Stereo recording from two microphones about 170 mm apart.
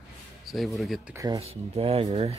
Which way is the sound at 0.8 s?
Centre (ahead or behind).